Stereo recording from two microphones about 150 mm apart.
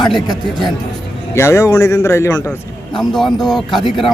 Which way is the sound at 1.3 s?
20° left (ahead or behind).